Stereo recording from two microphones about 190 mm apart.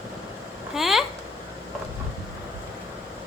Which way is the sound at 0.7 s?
Centre (ahead or behind).